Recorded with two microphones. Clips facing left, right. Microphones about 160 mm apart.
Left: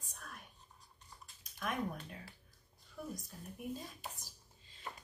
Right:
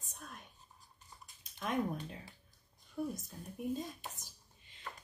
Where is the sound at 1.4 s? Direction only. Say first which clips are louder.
Right 2 dB; 25° right (ahead or behind).